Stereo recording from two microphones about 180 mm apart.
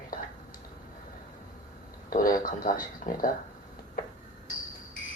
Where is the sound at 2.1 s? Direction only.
50° left (ahead or behind).